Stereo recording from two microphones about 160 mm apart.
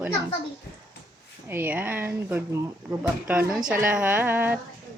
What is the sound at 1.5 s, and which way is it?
Speech, 10° right (ahead or behind).